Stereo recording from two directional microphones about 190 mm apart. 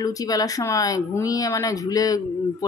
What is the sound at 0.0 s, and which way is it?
Speech, 20° left (ahead or behind).